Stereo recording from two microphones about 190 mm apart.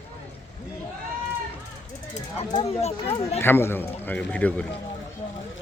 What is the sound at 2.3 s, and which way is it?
Speech, 35° left (ahead or behind).